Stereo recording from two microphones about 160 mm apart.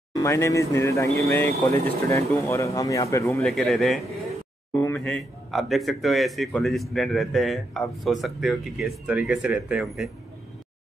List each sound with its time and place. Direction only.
0.1 s speech: 20° left (ahead or behind)
3.3 s speech: centre (ahead or behind)